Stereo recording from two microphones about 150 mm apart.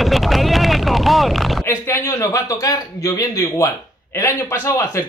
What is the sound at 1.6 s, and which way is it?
A man's voice, 15° left (ahead or behind).